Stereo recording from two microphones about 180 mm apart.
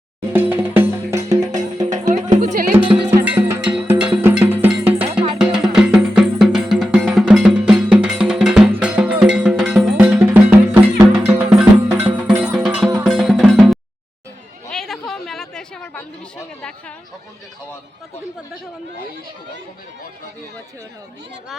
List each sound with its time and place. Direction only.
0.3 s music: 10° right (ahead or behind)
1.8 s music: 40° right (ahead or behind)
3.2 s music: 5° right (ahead or behind)
14.7 s chatter: centre (ahead or behind)